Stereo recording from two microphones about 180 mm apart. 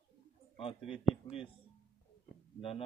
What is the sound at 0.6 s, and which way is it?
Speech, 30° left (ahead or behind).